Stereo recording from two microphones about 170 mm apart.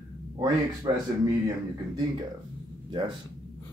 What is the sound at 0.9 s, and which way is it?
Speech, 25° right (ahead or behind).